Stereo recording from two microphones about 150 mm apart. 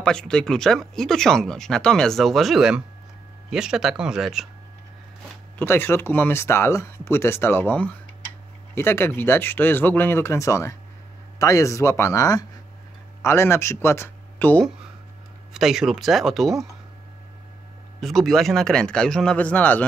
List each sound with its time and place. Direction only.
0.0 s speech: 5° left (ahead or behind)
5.6 s speech: 15° left (ahead or behind)
15.5 s speech: centre (ahead or behind)
18.0 s speech: centre (ahead or behind)